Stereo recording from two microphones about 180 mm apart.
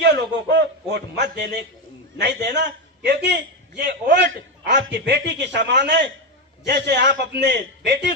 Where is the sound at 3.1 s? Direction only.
65° right (ahead or behind).